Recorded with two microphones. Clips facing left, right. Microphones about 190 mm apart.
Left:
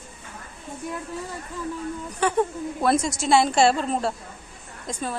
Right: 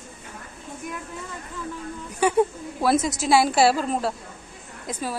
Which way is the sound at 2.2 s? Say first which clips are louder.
Right 2 dB; 10° right (ahead or behind).